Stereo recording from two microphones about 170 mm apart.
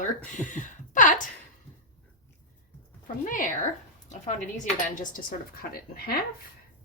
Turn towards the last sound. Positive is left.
turn(degrees=65)  # may be behind; listen again after turning